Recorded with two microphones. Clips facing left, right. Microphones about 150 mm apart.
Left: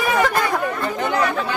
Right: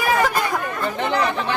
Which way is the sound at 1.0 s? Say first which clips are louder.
Left 1 dB; 30° right (ahead or behind).